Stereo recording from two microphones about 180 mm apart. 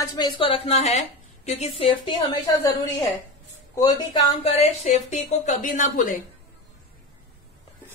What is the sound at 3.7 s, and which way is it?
Speech, 20° left (ahead or behind).